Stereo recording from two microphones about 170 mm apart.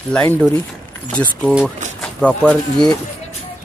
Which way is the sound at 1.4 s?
5° right (ahead or behind).